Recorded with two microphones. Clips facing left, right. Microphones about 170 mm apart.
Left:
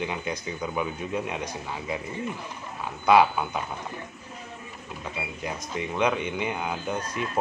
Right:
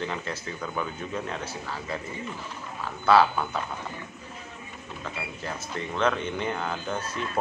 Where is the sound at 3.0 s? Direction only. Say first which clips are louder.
Left 1 dB; 15° left (ahead or behind).